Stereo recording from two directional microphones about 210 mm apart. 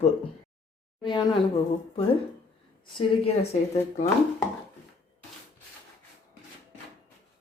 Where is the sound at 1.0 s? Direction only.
20° left (ahead or behind).